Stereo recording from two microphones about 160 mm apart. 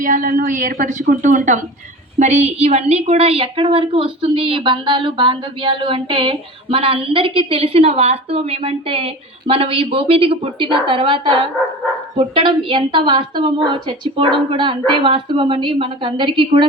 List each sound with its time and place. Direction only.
0.0 s a woman's voice: 60° right (ahead or behind); by 16.6 s 30° right (ahead or behind)